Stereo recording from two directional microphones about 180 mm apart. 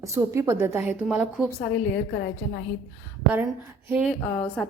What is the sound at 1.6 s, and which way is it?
Speech, 65° left (ahead or behind).